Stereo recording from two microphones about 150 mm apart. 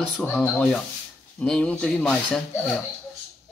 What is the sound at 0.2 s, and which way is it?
Speech, 10° left (ahead or behind).